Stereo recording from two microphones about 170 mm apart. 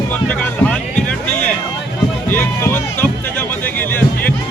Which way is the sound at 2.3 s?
15° left (ahead or behind).